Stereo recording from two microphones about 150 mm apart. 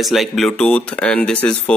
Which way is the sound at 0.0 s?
Centre (ahead or behind).